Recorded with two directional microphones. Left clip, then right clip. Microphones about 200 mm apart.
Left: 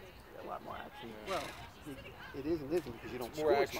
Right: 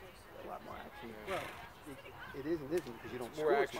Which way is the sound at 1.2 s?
50° left (ahead or behind).